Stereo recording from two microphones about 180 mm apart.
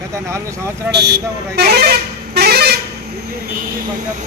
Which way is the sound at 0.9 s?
65° right (ahead or behind).